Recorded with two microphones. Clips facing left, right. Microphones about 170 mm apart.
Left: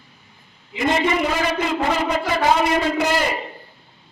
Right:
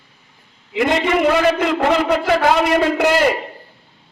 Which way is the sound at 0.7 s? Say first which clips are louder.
Right 3 dB; 65° right (ahead or behind).